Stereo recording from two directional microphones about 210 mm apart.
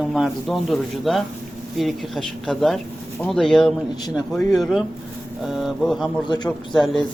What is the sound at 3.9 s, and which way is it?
Speech, 20° left (ahead or behind).